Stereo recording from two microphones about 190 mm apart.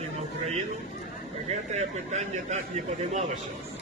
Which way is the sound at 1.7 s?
35° right (ahead or behind).